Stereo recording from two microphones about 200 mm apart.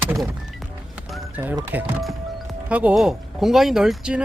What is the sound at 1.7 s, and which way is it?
Speech, centre (ahead or behind).